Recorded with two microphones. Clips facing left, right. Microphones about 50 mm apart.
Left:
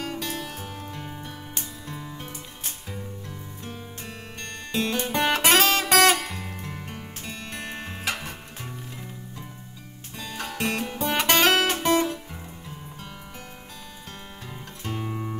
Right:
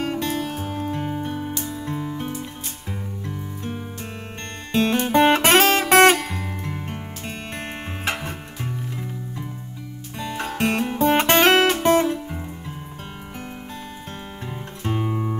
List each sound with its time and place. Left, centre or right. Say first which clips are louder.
0.0 s music: right 7 dB; right
4.7 s guitar: right 8 dB; right
6.2 s music: right 5 dB; centre
6.6 s music: right 6 dB; right
10.1 s guitar: right 5 dB; right
14.9 s music: right 7 dB; right